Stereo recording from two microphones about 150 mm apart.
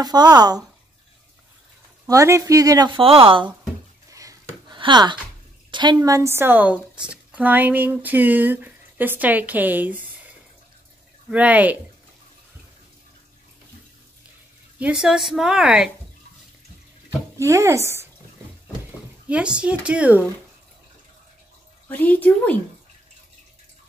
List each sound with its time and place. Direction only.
0.0 s a woman's voice: 25° right (ahead or behind)
2.0 s a woman's voice: 20° right (ahead or behind)
3.0 s speech: 40° right (ahead or behind)
4.1 s a sound: 20° right (ahead or behind)
4.7 s a woman's voice: 30° right (ahead or behind)
6.0 s a woman's voice: 20° right (ahead or behind)
11.2 s a woman's voice: 10° right (ahead or behind)
14.8 s a woman's voice: 5° right (ahead or behind)
17.4 s a woman's voice: 20° right (ahead or behind)
19.2 s a woman's voice: 5° right (ahead or behind)
21.8 s a woman's voice: 10° left (ahead or behind)